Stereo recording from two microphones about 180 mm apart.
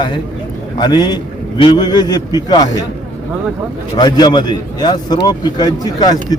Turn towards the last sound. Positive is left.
turn(degrees=20)  # may be behind; listen again after turning